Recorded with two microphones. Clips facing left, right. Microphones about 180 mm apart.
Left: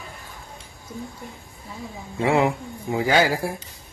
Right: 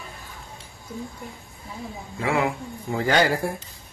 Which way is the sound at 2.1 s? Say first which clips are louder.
Left 4 dB; 25° left (ahead or behind).